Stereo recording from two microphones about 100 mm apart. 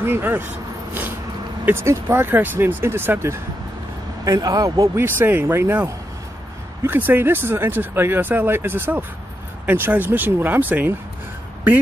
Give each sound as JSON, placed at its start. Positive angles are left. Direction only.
{"t": 0.0, "sound": "speech", "side_deg": -20}
{"t": 4.2, "sound": "speech", "side_deg": -40}